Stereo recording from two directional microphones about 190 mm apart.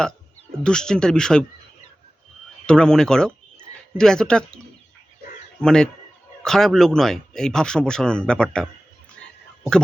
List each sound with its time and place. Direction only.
0.6 s speech: 5° left (ahead or behind)
2.6 s speech: 5° left (ahead or behind)